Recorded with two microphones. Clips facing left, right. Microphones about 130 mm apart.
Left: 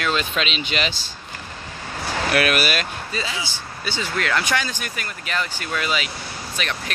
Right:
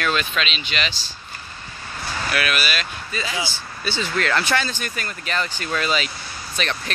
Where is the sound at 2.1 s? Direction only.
55° left (ahead or behind).